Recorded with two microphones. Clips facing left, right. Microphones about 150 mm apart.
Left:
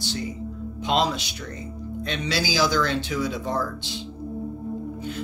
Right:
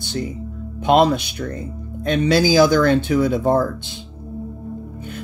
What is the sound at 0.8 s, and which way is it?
Speech, 55° right (ahead or behind).